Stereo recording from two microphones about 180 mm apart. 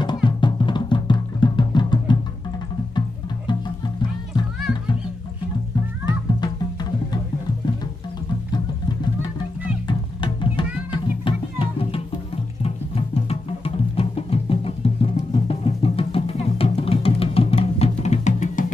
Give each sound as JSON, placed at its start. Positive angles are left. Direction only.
{"t": 0.0, "sound": "music", "side_deg": 25}
{"t": 6.0, "sound": "music", "side_deg": 25}
{"t": 9.8, "sound": "music", "side_deg": 25}